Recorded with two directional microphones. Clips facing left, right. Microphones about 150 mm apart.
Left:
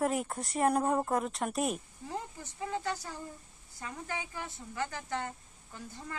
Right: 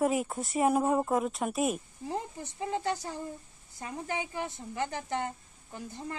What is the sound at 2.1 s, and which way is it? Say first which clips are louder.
Speech: right 4 dB; 25° right (ahead or behind).